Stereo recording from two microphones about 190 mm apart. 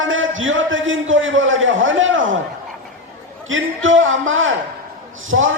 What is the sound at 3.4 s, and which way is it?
A man's voice, 90° right.